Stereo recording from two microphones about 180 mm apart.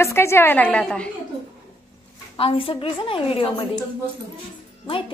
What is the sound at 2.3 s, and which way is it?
A woman's voice, 30° left (ahead or behind).